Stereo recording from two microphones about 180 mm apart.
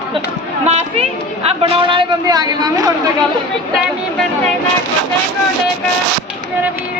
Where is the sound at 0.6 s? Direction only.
35° right (ahead or behind).